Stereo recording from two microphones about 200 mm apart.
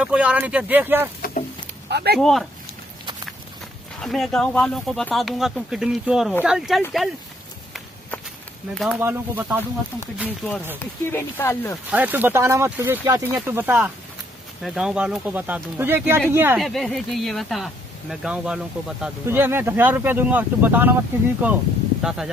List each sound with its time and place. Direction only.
0.0 s speech: 5° right (ahead or behind)
1.9 s speech: 55° right (ahead or behind)
2.1 s speech: centre (ahead or behind)
4.0 s speech: centre (ahead or behind)
9.0 s speech: 10° right (ahead or behind)
10.8 s speech: 10° left (ahead or behind)
11.9 s speech: 10° right (ahead or behind)